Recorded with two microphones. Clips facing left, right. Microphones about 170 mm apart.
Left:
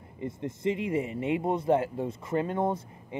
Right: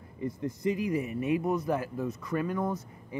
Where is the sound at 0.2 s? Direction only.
25° left (ahead or behind).